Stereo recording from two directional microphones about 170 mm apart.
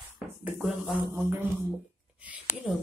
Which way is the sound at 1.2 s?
15° right (ahead or behind).